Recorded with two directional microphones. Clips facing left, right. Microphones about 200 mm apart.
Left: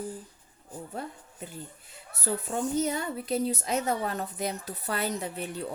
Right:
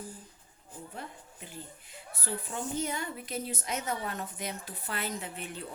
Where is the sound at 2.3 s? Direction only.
45° left (ahead or behind).